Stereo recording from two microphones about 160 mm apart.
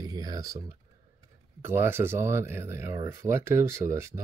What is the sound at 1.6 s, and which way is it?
Speech, 15° right (ahead or behind).